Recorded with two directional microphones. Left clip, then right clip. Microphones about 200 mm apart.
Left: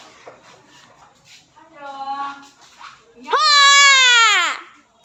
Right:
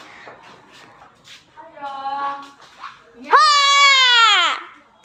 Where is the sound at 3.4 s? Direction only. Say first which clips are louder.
Left 5 dB; 25° left (ahead or behind).